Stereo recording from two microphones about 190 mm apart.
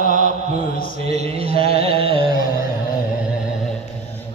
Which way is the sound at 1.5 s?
55° left (ahead or behind).